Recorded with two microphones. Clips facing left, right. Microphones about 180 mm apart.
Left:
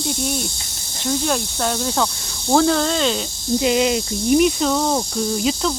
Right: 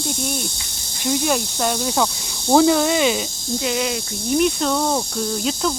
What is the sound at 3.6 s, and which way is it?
Speech, 20° left (ahead or behind).